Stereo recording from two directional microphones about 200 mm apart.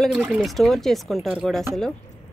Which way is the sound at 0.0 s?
Centre (ahead or behind).